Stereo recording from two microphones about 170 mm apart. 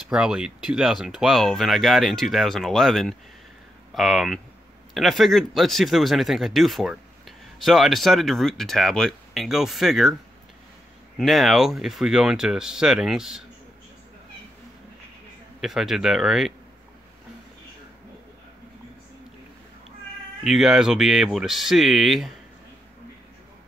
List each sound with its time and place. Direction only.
0.1 s speech: 5° right (ahead or behind)
11.1 s speech: centre (ahead or behind)
15.6 s speech: centre (ahead or behind)
20.4 s speech: centre (ahead or behind)